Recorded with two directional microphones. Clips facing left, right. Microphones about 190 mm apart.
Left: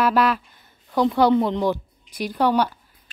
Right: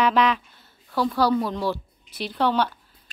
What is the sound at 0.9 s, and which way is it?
Speech, 20° left (ahead or behind).